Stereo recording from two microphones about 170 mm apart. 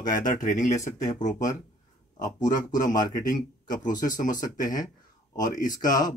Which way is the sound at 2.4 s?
50° left (ahead or behind).